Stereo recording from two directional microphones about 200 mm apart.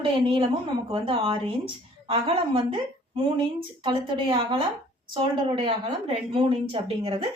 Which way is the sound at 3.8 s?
25° right (ahead or behind).